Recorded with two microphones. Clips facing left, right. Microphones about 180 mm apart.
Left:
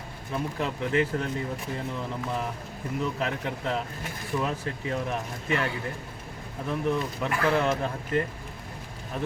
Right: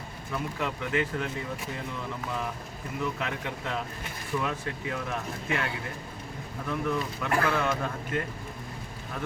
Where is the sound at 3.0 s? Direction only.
35° left (ahead or behind).